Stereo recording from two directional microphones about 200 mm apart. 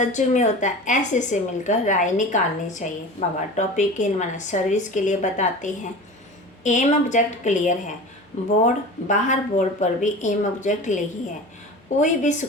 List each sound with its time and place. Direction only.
0.0 s a woman's voice: 35° left (ahead or behind)